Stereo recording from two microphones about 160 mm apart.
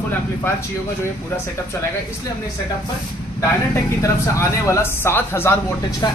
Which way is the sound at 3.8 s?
20° left (ahead or behind).